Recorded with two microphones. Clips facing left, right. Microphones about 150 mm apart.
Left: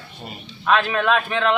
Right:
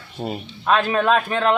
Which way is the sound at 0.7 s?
35° right (ahead or behind).